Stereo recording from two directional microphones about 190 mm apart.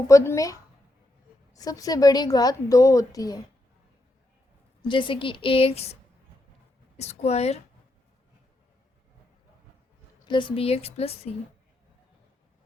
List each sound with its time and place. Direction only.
0.1 s a woman's voice: 15° left (ahead or behind)
4.8 s a woman's voice: 25° left (ahead or behind)
10.2 s a woman's voice: 25° left (ahead or behind)